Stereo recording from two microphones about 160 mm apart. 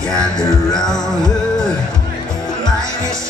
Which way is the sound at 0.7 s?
5° left (ahead or behind).